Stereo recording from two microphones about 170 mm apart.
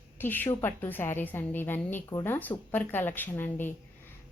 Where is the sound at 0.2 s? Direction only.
10° left (ahead or behind).